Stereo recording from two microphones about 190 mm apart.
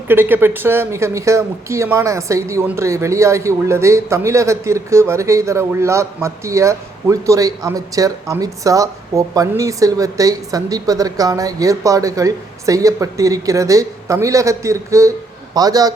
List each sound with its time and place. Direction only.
0.1 s a man's voice: 10° right (ahead or behind)